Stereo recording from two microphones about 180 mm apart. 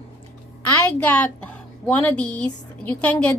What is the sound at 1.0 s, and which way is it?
A woman's voice, 10° left (ahead or behind).